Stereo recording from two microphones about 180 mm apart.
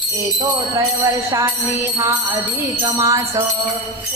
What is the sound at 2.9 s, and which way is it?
Jingle bell, 15° right (ahead or behind).